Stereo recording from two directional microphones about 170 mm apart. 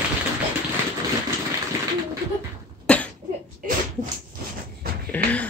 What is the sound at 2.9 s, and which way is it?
Cough, 5° left (ahead or behind).